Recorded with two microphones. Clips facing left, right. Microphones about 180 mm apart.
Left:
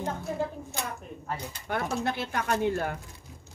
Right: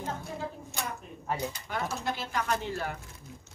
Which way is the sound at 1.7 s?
60° left (ahead or behind).